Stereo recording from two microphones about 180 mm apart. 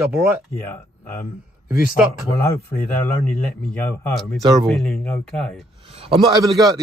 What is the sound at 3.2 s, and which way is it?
Speech, 10° left (ahead or behind).